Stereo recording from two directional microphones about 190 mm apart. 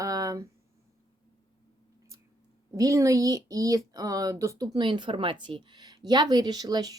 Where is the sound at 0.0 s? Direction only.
20° right (ahead or behind).